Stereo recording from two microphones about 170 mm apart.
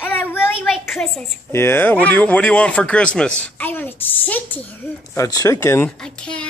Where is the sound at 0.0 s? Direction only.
10° left (ahead or behind).